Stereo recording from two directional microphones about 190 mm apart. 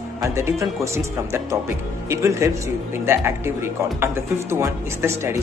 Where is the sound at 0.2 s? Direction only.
15° right (ahead or behind).